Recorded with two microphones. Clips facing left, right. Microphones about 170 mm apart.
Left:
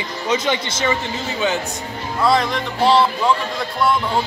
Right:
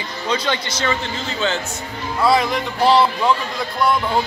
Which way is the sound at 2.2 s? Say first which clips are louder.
Right 1 dB; centre (ahead or behind).